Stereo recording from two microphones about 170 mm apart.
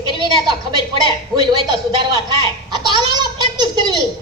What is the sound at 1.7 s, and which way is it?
Speech, 25° right (ahead or behind).